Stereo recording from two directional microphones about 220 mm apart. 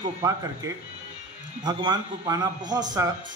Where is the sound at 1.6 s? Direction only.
20° right (ahead or behind).